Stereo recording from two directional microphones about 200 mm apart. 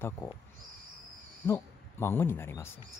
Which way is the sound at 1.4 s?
10° left (ahead or behind).